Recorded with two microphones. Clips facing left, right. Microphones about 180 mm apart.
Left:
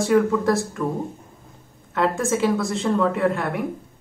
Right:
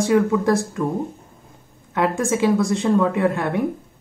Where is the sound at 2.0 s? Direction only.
15° right (ahead or behind).